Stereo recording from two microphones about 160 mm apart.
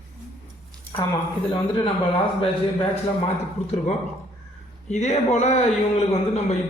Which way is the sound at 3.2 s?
40° left (ahead or behind).